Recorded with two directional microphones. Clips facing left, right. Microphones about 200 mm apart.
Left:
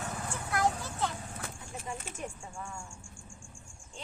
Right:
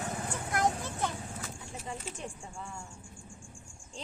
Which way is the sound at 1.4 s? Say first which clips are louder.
Even; 50° left (ahead or behind).